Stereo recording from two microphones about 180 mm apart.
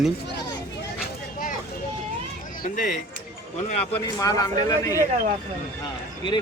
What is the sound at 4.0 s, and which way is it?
A man's voice, 20° left (ahead or behind).